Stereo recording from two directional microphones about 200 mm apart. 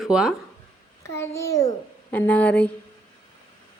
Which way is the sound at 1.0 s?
15° left (ahead or behind).